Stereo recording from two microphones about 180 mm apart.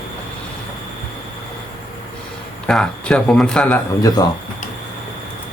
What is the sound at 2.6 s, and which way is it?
A man's voice, 5° left (ahead or behind).